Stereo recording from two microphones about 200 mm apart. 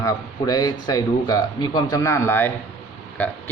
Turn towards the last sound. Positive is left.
turn(degrees=10)  # may be behind; listen again after turning